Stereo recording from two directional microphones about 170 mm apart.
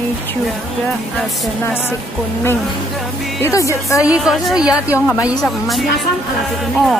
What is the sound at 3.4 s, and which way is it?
Speech, 15° left (ahead or behind).